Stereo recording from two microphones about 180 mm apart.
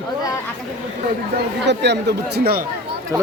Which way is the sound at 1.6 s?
70° right (ahead or behind).